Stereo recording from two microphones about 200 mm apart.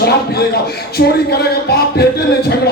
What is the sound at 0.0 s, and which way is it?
Speech, 50° left (ahead or behind).